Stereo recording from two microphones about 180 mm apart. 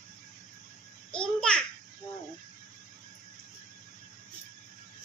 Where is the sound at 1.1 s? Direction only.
5° left (ahead or behind).